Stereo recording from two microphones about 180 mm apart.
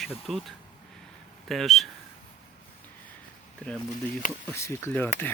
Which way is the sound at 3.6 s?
5° left (ahead or behind).